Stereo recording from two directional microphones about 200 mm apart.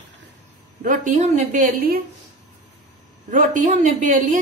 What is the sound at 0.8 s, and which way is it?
A woman's voice, 40° right (ahead or behind).